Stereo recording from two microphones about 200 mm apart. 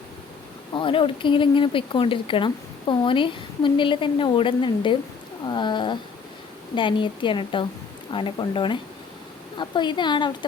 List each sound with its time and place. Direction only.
0.8 s a woman's voice: 25° left (ahead or behind)